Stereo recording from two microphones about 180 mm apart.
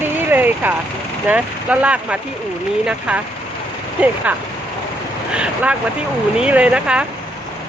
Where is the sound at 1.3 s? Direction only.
10° right (ahead or behind).